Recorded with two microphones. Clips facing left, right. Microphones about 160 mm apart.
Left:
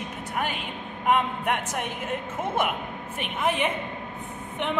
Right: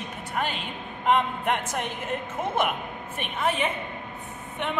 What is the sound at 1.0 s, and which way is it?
Speech, 10° left (ahead or behind).